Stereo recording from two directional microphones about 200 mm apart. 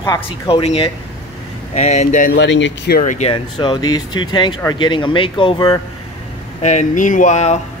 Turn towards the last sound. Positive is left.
turn(degrees=35)  # may be behind; listen again after turning